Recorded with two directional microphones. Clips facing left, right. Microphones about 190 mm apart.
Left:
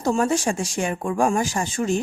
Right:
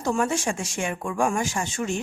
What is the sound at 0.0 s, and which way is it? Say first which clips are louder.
Speech: left 4 dB; 35° left (ahead or behind).